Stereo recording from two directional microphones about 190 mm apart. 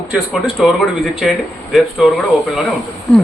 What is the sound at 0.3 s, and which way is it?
Speech, centre (ahead or behind).